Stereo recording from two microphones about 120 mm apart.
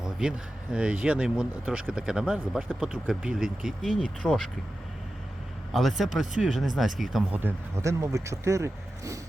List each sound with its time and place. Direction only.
0.0 s speech: 5° right (ahead or behind)
5.7 s speech: centre (ahead or behind)
7.3 s speech: 20° right (ahead or behind)